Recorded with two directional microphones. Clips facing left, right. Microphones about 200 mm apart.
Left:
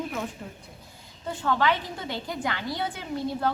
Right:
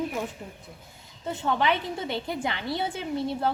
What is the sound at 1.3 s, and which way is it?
A woman's voice, 20° right (ahead or behind).